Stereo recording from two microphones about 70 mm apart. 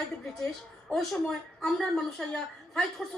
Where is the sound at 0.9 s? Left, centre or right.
Centre.